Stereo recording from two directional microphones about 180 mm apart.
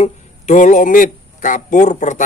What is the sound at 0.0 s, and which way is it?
Speech, 45° left (ahead or behind).